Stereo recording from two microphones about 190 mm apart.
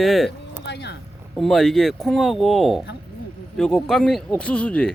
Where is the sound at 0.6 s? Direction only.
65° left (ahead or behind).